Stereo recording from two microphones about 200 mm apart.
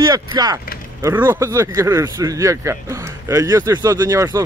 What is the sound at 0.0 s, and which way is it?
Speech, 20° right (ahead or behind).